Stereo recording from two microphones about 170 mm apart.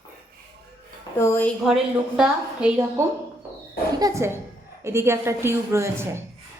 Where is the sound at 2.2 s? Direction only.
10° right (ahead or behind).